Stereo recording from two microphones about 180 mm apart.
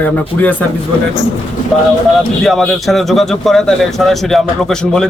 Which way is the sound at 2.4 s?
Centre (ahead or behind).